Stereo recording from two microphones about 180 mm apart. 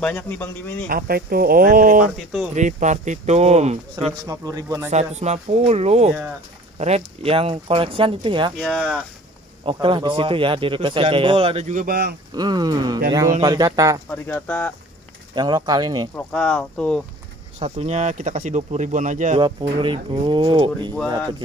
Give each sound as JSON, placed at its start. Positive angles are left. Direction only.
{"t": 0.0, "sound": "speech", "side_deg": 10}
{"t": 0.8, "sound": "speech", "side_deg": -55}
{"t": 4.3, "sound": "speech", "side_deg": -20}
{"t": 4.9, "sound": "speech", "side_deg": -40}
{"t": 8.5, "sound": "speech", "side_deg": 0}
{"t": 9.7, "sound": "speech", "side_deg": -30}
{"t": 12.4, "sound": "speech", "side_deg": -25}
{"t": 14.0, "sound": "speech", "side_deg": 10}
{"t": 15.3, "sound": "speech", "side_deg": -25}
{"t": 16.2, "sound": "speech", "side_deg": 5}
{"t": 17.6, "sound": "speech", "side_deg": -35}
{"t": 19.8, "sound": "speech", "side_deg": -30}